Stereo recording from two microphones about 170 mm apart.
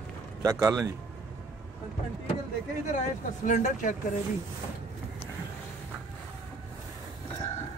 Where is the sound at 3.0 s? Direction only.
45° left (ahead or behind).